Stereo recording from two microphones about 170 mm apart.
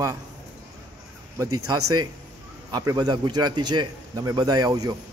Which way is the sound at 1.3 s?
20° right (ahead or behind).